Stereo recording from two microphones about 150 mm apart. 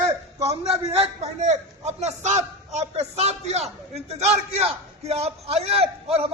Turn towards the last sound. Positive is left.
turn(degrees=-40)  # may be behind; listen again after turning